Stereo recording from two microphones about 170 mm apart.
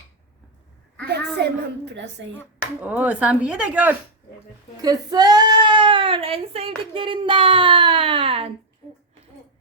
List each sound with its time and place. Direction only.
1.0 s a woman's voice: 75° right (ahead or behind); by 2.4 s 90° right
2.8 s speech: 10° right (ahead or behind)
4.8 s speech: 20° right (ahead or behind)